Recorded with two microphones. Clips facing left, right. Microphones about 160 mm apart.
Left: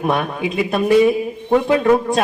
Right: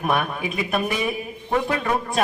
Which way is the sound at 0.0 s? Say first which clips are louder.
Left 4 dB; 30° left (ahead or behind).